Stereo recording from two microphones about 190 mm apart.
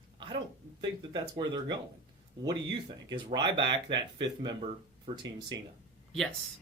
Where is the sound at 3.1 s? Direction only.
25° right (ahead or behind).